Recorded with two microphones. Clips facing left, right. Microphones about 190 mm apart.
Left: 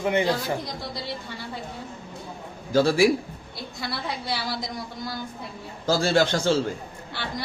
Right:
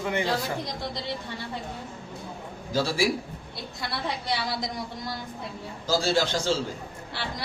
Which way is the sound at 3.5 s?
Centre (ahead or behind).